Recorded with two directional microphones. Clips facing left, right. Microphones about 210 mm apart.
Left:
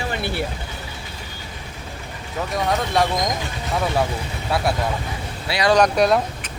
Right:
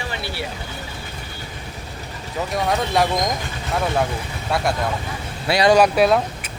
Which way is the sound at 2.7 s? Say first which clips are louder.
Right 1 dB; centre (ahead or behind).